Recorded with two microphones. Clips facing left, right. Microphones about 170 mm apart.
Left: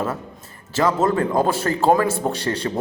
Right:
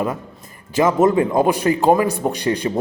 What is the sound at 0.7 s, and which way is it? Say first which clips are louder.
Speech: right 4 dB; 15° right (ahead or behind).